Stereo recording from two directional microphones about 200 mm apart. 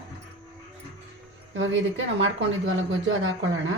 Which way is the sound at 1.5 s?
75° right (ahead or behind).